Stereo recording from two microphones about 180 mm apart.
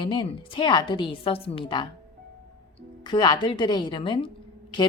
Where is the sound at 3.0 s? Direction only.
25° left (ahead or behind).